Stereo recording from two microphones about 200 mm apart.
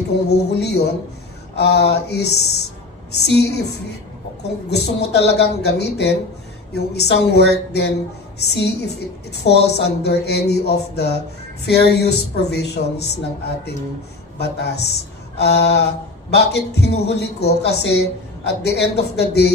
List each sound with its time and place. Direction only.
0.3 s speech: 55° left (ahead or behind)
14.4 s speech: 55° left (ahead or behind)